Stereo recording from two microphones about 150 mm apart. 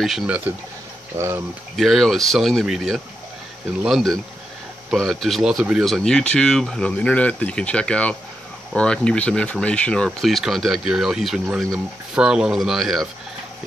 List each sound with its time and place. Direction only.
0.0 s speech: centre (ahead or behind)
1.1 s speech: 15° right (ahead or behind)
1.8 s speech: centre (ahead or behind)